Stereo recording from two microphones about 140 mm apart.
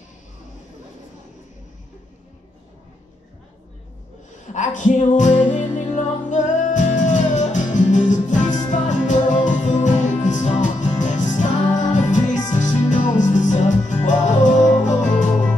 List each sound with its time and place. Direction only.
4.5 s music: 60° left (ahead or behind)